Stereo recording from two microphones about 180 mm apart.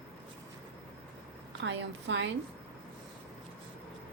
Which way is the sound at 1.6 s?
90° right.